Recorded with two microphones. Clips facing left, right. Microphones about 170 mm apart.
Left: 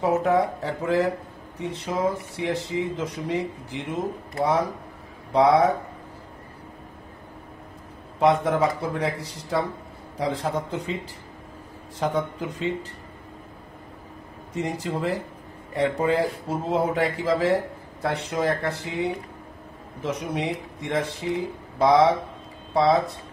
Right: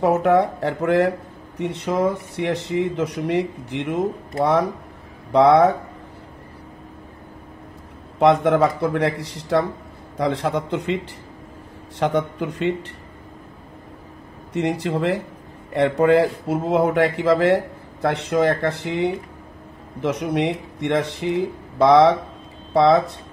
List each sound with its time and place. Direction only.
0.0 s speech: 70° right (ahead or behind)
8.2 s speech: 70° right (ahead or behind)
12.0 s speech: 75° right (ahead or behind)
14.5 s speech: 70° right (ahead or behind)